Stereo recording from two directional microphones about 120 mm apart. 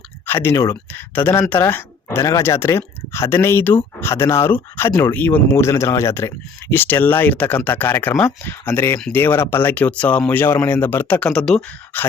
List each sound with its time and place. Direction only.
0.3 s speech: 20° left (ahead or behind)